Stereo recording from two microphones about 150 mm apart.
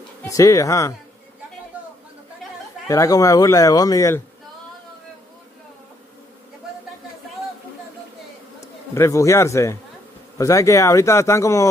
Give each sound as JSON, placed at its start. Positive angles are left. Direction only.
{"t": 0.3, "sound": "speech", "side_deg": 20}
{"t": 2.9, "sound": "speech", "side_deg": 20}
{"t": 8.5, "sound": "a man's voice", "side_deg": 20}